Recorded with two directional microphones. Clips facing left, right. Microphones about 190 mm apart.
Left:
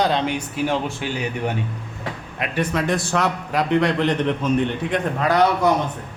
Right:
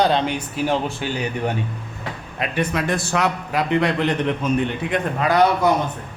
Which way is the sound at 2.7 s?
5° right (ahead or behind).